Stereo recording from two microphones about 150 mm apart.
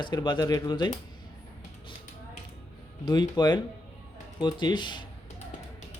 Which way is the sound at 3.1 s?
30° left (ahead or behind).